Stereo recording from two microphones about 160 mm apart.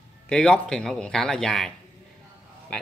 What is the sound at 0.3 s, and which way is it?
Speech, 5° left (ahead or behind).